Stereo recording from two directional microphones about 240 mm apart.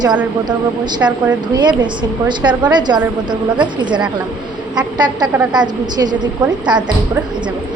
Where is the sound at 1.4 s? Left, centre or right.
Centre.